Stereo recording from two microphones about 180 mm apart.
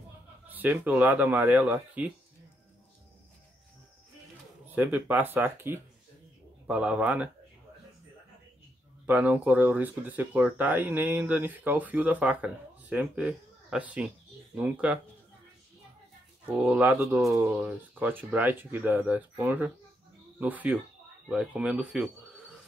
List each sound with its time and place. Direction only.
0.5 s speech: 10° right (ahead or behind)
4.6 s speech: 10° right (ahead or behind)
9.0 s speech: 10° right (ahead or behind)
16.4 s speech: 5° right (ahead or behind)